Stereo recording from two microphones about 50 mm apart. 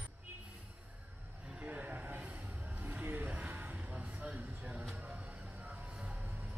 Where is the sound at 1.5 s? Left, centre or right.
Right.